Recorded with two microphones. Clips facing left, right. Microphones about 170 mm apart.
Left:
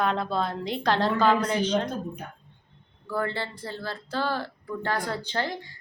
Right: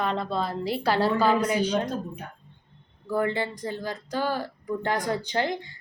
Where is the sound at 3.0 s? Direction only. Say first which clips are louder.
Right 4 dB; 15° right (ahead or behind).